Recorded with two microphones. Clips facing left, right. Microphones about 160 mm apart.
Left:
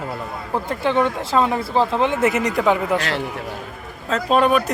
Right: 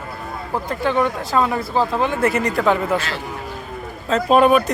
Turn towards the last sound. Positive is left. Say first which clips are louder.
# right 3 dB
turn(degrees=-5)  # may be behind; listen again after turning